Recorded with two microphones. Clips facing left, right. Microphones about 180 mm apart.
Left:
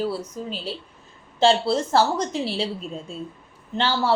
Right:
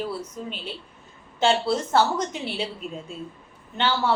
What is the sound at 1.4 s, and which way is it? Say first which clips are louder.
Speech: left 3 dB; 30° left (ahead or behind).